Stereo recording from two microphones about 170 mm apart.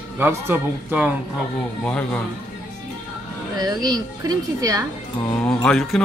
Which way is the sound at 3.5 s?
25° right (ahead or behind).